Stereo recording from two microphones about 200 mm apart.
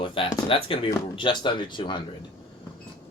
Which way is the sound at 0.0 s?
25° left (ahead or behind).